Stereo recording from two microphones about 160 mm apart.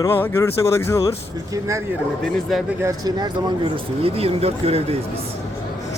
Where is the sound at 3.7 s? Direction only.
35° right (ahead or behind).